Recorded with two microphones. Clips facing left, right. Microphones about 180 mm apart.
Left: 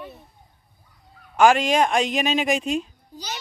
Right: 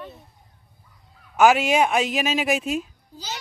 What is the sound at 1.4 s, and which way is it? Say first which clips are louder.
Speech: even; 10° right (ahead or behind).